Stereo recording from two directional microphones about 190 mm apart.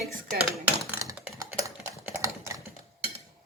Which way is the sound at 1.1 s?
15° right (ahead or behind).